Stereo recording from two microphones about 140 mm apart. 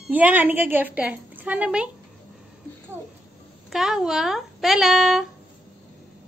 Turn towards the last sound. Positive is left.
turn(degrees=0)  # may be behind; listen again after turning